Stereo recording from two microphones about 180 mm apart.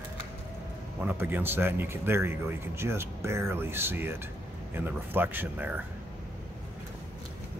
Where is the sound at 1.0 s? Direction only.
10° right (ahead or behind).